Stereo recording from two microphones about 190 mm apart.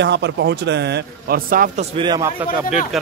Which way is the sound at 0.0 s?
65° right (ahead or behind).